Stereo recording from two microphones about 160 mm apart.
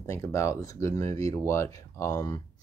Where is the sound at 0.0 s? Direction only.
20° left (ahead or behind).